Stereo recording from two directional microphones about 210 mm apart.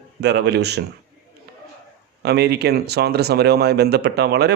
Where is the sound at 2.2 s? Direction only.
50° right (ahead or behind).